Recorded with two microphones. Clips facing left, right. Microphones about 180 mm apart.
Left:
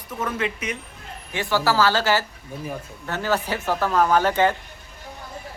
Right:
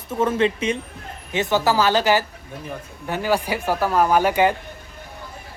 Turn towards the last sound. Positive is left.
turn(degrees=-15)  # may be behind; listen again after turning